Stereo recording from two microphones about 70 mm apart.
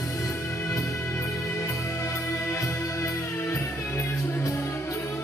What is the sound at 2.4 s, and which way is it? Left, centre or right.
Music, left.